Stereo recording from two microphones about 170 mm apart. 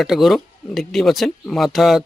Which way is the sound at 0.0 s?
Centre (ahead or behind).